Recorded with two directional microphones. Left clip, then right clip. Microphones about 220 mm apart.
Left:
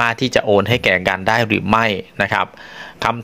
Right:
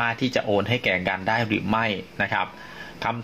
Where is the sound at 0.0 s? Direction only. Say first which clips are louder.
Left 8 dB; 45° left (ahead or behind).